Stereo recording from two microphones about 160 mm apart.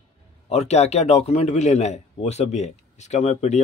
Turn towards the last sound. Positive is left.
turn(degrees=45)  # may be behind; listen again after turning